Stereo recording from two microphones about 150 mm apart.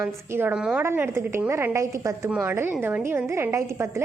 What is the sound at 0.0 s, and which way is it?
A woman's voice, 15° right (ahead or behind).